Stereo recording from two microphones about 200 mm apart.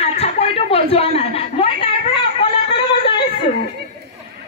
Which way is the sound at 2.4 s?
25° left (ahead or behind).